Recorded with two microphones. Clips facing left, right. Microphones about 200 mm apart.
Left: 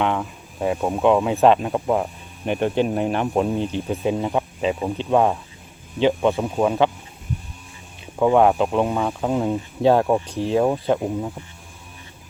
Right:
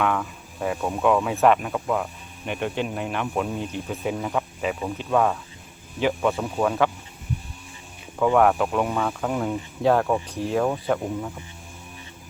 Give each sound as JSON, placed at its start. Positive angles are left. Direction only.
{"t": 0.0, "sound": "speech", "side_deg": 25}
{"t": 8.2, "sound": "speech", "side_deg": 20}